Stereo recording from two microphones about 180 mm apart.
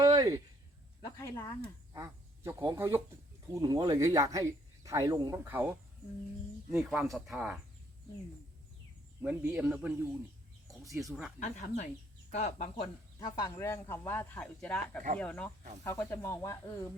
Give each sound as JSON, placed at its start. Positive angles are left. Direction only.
{"t": 0.0, "sound": "a sound", "side_deg": -20}
{"t": 1.0, "sound": "speech", "side_deg": 15}
{"t": 1.9, "sound": "a man's voice", "side_deg": -15}
{"t": 9.2, "sound": "a man's voice", "side_deg": -10}
{"t": 10.7, "sound": "bird", "side_deg": 0}
{"t": 11.3, "sound": "speech", "side_deg": 40}